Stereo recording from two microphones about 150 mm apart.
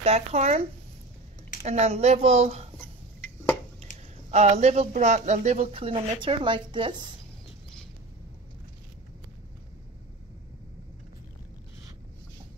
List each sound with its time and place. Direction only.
0.0 s speech: 45° right (ahead or behind)
1.6 s speech: 45° right (ahead or behind)
4.3 s speech: 50° right (ahead or behind); by 7.0 s 35° right (ahead or behind)